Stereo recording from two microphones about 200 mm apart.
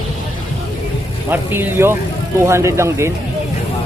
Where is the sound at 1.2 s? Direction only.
10° right (ahead or behind).